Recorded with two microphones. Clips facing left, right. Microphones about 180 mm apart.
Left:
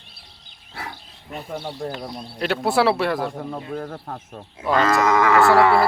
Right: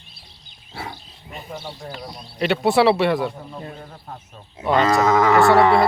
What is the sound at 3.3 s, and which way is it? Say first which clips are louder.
Speech: left 6 dB; 60° left (ahead or behind).